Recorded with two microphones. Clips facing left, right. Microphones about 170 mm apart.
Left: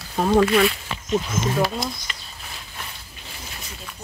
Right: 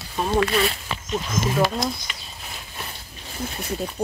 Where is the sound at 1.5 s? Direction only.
Centre (ahead or behind).